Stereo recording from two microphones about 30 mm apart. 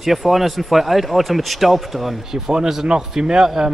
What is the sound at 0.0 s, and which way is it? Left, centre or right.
Speech, centre.